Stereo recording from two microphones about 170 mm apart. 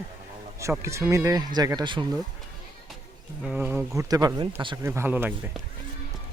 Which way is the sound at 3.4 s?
10° right (ahead or behind).